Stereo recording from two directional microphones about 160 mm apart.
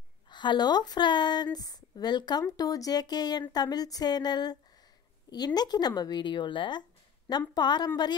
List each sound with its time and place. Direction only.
0.3 s speech: 30° left (ahead or behind)